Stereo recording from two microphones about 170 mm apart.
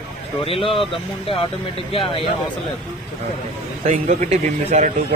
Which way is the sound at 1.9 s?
35° left (ahead or behind).